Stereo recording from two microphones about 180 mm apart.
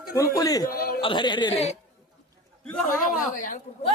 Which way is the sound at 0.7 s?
55° left (ahead or behind).